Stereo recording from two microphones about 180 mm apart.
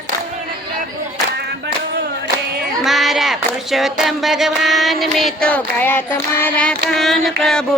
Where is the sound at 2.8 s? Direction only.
Centre (ahead or behind).